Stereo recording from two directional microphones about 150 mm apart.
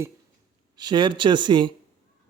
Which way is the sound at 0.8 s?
30° right (ahead or behind).